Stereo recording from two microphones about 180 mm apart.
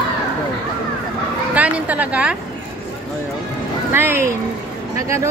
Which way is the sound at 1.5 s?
10° right (ahead or behind).